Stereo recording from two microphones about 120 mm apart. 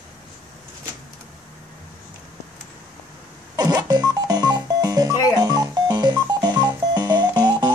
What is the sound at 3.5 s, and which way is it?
Music, 35° right (ahead or behind).